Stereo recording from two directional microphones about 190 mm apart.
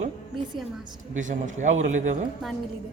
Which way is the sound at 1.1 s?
40° right (ahead or behind).